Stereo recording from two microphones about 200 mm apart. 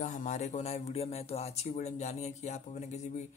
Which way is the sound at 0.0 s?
35° left (ahead or behind).